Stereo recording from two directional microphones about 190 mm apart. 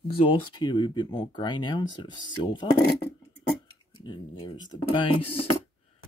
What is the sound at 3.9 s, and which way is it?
Speech, 25° left (ahead or behind).